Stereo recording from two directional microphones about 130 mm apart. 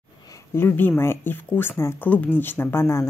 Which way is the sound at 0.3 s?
20° left (ahead or behind).